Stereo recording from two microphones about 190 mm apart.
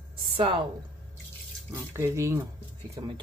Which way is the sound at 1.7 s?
15° right (ahead or behind).